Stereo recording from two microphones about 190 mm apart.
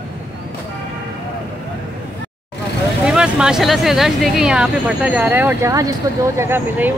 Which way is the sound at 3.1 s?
5° right (ahead or behind).